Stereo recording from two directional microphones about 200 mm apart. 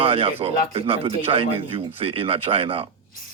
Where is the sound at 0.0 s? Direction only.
30° right (ahead or behind).